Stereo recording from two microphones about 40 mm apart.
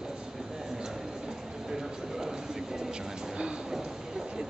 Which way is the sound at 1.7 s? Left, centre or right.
Centre.